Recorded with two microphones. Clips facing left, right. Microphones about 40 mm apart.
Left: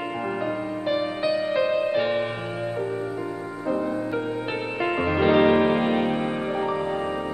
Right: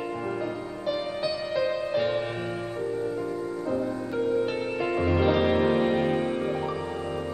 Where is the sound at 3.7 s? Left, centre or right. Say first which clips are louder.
Left 6 dB; left.